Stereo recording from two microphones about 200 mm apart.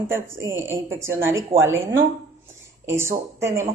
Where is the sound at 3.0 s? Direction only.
15° right (ahead or behind).